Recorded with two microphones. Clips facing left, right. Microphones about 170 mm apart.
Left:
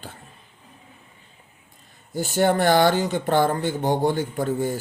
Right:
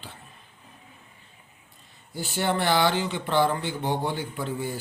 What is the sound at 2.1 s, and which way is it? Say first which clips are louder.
Speech: left 7 dB; 45° left (ahead or behind).